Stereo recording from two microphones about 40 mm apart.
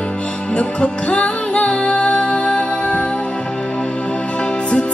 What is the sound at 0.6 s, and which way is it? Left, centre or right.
Music, left.